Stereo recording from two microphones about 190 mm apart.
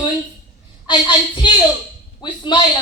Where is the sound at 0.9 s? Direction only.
25° left (ahead or behind).